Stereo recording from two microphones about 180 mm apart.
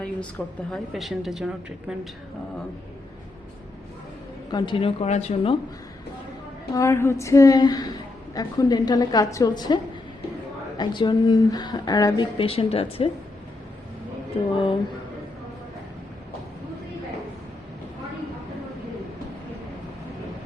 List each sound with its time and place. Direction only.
0.0 s a woman's voice: 5° left (ahead or behind)
4.5 s speech: 25° left (ahead or behind)
6.7 s a woman's voice: 15° left (ahead or behind); by 13.1 s 35° left (ahead or behind)
14.3 s speech: 35° left (ahead or behind)